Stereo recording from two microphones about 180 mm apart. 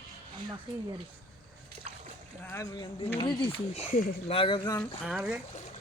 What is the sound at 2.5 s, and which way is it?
Speech, 15° left (ahead or behind).